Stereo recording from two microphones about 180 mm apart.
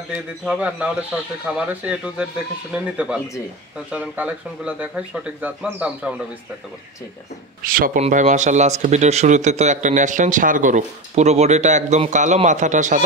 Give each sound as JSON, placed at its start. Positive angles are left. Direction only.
{"t": 0.1, "sound": "speech", "side_deg": -5}
{"t": 3.9, "sound": "speech", "side_deg": -5}
{"t": 7.6, "sound": "speech", "side_deg": -50}